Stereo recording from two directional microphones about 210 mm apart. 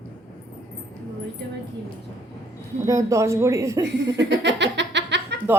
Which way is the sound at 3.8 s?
55° right (ahead or behind).